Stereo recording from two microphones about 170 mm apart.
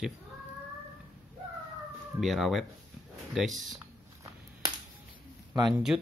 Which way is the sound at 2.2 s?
Centre (ahead or behind).